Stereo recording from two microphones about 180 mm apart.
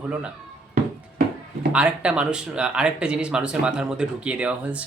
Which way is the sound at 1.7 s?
5° right (ahead or behind).